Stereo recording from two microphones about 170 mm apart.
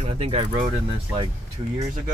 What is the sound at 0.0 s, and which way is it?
Speech, 35° right (ahead or behind).